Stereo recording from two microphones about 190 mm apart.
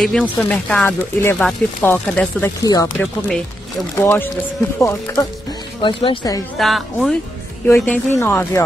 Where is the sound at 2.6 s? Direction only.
20° left (ahead or behind).